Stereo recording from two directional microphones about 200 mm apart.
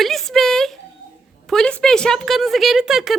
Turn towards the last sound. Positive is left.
turn(degrees=0)  # may be behind; listen again after turning